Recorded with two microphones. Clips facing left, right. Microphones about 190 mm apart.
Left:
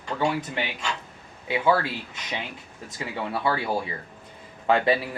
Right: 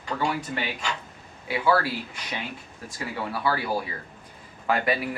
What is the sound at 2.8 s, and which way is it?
Speech, 20° left (ahead or behind).